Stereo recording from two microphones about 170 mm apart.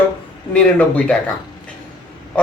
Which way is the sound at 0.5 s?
5° left (ahead or behind).